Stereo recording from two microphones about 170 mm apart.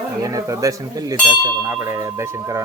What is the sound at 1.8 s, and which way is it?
Wind chime, 15° right (ahead or behind).